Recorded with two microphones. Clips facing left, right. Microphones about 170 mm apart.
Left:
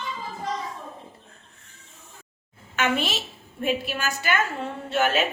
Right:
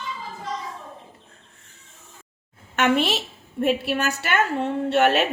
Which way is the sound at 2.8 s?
65° right (ahead or behind).